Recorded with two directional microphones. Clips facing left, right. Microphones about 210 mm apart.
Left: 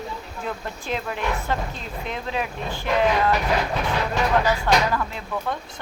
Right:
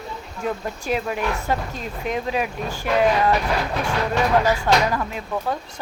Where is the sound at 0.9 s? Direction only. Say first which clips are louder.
Right 3 dB; 10° right (ahead or behind).